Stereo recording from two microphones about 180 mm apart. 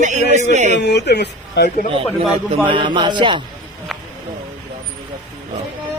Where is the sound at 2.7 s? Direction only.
25° right (ahead or behind).